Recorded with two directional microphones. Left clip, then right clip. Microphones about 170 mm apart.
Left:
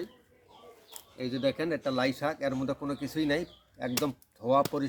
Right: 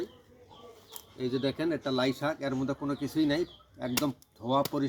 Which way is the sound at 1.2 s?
15° left (ahead or behind).